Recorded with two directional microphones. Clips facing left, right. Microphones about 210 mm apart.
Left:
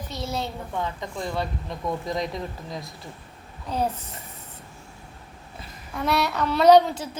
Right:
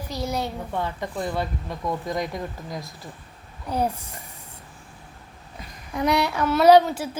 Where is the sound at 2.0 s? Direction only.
25° left (ahead or behind).